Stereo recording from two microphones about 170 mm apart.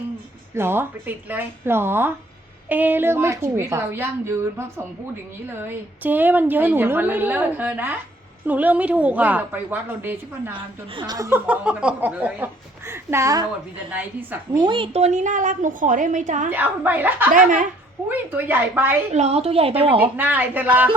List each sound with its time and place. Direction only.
0.5 s a woman's voice: 15° right (ahead or behind)
10.9 s a woman's voice: 25° right (ahead or behind)
14.5 s a woman's voice: 25° right (ahead or behind); by 16.5 s 45° right (ahead or behind)
16.5 s a woman's voice: 10° right (ahead or behind)
17.3 s a woman's voice: 50° right (ahead or behind)
18.1 s a woman's voice: 10° right (ahead or behind)
19.1 s a woman's voice: 40° right (ahead or behind)
20.0 s a woman's voice: 10° right (ahead or behind)